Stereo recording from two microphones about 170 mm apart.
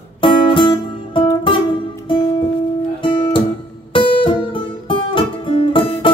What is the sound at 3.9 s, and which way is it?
Music, 30° left (ahead or behind).